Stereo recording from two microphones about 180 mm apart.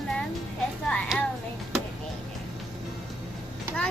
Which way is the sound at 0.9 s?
5° left (ahead or behind).